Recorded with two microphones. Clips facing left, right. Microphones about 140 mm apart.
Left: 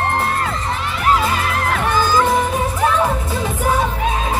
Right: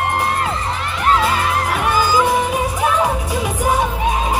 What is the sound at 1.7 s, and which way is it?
Music, 10° right (ahead or behind).